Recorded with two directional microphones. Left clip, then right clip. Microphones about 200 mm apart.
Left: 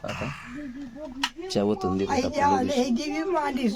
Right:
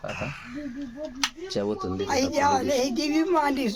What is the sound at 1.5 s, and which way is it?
Speech, 35° left (ahead or behind).